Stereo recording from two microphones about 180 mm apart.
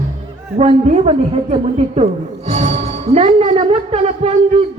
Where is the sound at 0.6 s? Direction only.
35° right (ahead or behind).